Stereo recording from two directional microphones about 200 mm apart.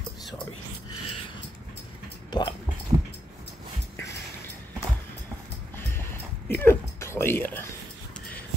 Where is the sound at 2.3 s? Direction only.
20° left (ahead or behind).